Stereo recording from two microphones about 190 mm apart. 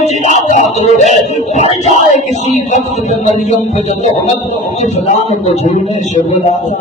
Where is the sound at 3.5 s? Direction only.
35° left (ahead or behind).